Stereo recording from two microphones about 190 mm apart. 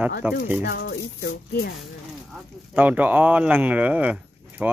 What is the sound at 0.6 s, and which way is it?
Speech, 60° left (ahead or behind).